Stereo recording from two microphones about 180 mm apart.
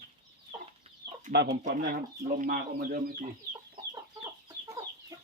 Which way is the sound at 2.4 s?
55° right (ahead or behind).